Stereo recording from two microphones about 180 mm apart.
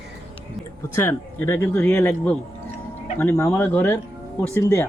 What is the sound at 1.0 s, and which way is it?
Speech, 15° left (ahead or behind).